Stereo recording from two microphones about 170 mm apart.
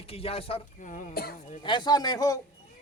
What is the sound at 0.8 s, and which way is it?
Speech, 50° left (ahead or behind).